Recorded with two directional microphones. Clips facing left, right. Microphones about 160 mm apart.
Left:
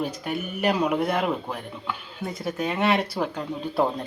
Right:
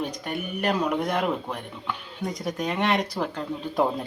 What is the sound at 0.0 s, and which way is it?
A man's voice, 5° left (ahead or behind).